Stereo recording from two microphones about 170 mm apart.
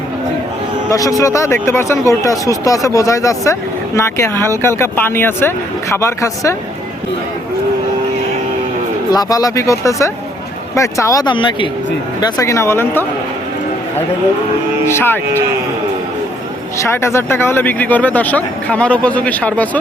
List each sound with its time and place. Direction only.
0.9 s speech: 20° left (ahead or behind)
9.1 s speech: 20° left (ahead or behind)
12.2 s speech: 20° left (ahead or behind)
14.8 s speech: 15° left (ahead or behind)
16.7 s speech: 15° left (ahead or behind)